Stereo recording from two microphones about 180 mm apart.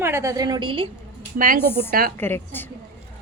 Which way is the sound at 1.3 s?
50° right (ahead or behind).